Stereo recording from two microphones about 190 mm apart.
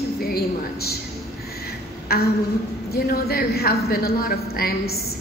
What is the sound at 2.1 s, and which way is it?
A woman's voice, 55° left (ahead or behind).